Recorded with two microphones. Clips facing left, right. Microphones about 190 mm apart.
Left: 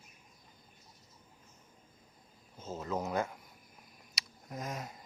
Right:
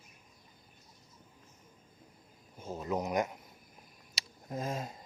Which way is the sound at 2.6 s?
15° right (ahead or behind).